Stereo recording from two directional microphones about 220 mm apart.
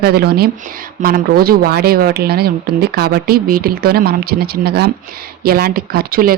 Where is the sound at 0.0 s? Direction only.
45° right (ahead or behind).